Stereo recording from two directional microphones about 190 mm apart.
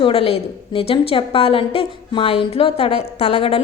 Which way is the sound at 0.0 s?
30° left (ahead or behind).